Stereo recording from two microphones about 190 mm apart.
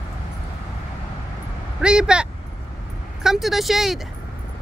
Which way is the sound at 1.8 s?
5° right (ahead or behind).